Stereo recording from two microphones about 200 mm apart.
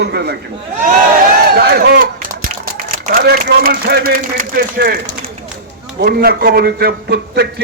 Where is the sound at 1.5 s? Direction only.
55° right (ahead or behind).